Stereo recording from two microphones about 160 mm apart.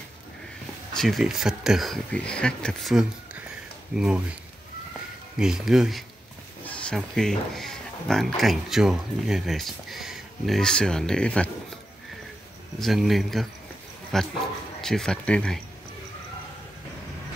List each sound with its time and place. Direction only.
0.9 s speech: centre (ahead or behind)
5.4 s speech: 5° right (ahead or behind)
12.7 s speech: centre (ahead or behind)